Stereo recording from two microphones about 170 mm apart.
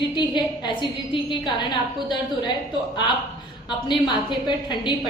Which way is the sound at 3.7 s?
25° left (ahead or behind).